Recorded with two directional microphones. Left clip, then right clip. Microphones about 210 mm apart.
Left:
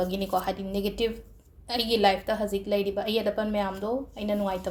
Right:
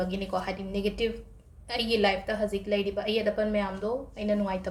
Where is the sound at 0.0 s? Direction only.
25° left (ahead or behind).